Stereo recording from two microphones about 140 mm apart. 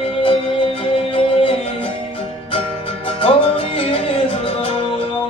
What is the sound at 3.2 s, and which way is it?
Music, 40° left (ahead or behind).